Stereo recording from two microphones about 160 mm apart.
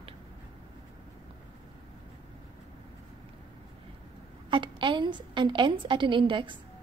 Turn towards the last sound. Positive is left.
turn(degrees=-30)  # may be behind; listen again after turning